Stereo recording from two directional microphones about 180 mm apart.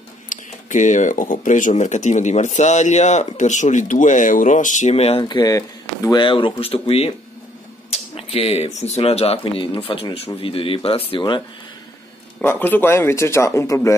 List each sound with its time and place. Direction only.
0.3 s speech: 45° left (ahead or behind); by 11.4 s 25° left (ahead or behind)
12.4 s speech: 10° left (ahead or behind)